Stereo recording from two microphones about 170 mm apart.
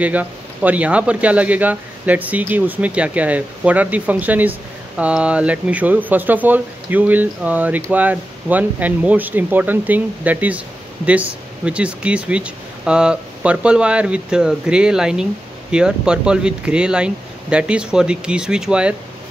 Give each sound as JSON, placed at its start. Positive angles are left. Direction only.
{"t": 0.0, "sound": "speech", "side_deg": -10}